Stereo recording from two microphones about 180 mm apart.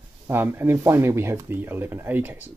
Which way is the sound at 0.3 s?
15° right (ahead or behind).